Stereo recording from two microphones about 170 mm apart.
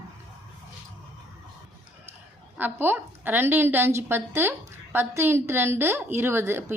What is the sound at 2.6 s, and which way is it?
A woman's voice, 10° right (ahead or behind).